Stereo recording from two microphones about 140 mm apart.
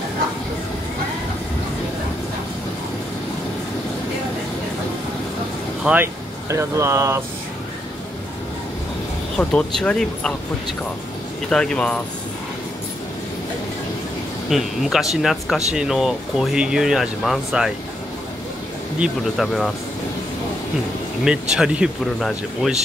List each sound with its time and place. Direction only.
5.9 s speech: 5° right (ahead or behind)
6.5 s speech: 20° right (ahead or behind)
9.4 s speech: 5° left (ahead or behind)
11.5 s speech: 5° left (ahead or behind)
14.5 s speech: centre (ahead or behind)
18.9 s speech: centre (ahead or behind)
21.2 s speech: 5° right (ahead or behind)